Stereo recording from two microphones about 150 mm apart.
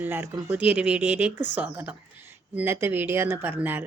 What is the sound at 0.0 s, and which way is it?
Speech, 15° right (ahead or behind).